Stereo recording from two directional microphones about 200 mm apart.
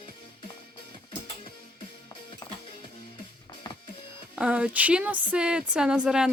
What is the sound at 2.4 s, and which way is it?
Music, 15° left (ahead or behind).